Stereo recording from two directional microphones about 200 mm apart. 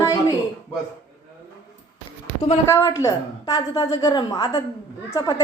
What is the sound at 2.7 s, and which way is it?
A woman's voice, 15° left (ahead or behind).